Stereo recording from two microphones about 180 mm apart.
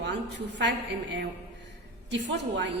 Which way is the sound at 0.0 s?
75° right (ahead or behind).